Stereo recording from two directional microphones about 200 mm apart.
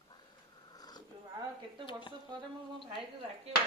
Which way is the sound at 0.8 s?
20° left (ahead or behind).